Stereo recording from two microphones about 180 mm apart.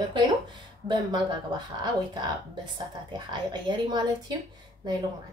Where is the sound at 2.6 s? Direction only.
25° right (ahead or behind).